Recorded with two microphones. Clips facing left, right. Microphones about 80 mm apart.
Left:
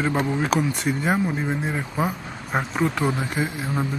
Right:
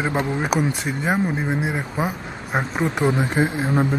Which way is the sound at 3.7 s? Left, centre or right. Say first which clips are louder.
Right 6 dB; right.